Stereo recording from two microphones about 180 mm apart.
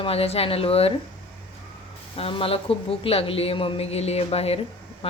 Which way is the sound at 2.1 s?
30° left (ahead or behind).